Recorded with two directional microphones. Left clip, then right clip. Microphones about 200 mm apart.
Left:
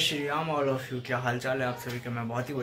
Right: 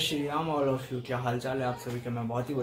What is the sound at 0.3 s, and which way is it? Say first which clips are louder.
Speech: left 1 dB; 5° right (ahead or behind).